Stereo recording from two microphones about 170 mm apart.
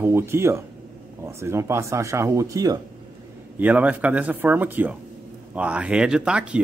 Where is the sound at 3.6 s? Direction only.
10° right (ahead or behind).